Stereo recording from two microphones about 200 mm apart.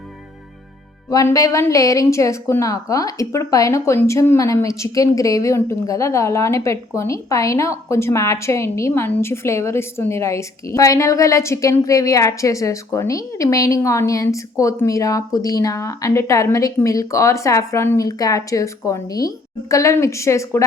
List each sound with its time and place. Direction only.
1.1 s a woman's voice: 15° left (ahead or behind)